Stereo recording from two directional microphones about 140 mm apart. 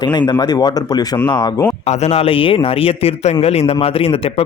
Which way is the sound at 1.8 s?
50° left (ahead or behind).